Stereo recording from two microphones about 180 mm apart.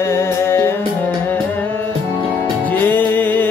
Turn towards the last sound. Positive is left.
turn(degrees=10)  # may be behind; listen again after turning